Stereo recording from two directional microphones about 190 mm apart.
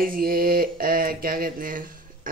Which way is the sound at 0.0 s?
50° right (ahead or behind).